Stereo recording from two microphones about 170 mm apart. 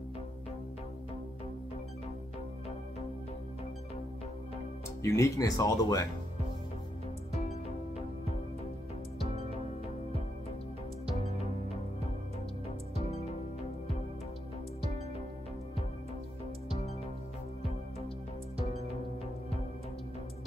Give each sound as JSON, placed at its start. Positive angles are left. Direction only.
{"t": 5.0, "sound": "speech", "side_deg": 20}
{"t": 9.2, "sound": "music", "side_deg": 40}